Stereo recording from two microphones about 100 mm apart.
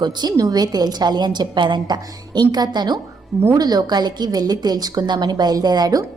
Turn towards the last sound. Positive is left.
turn(degrees=-40)  # may be behind; listen again after turning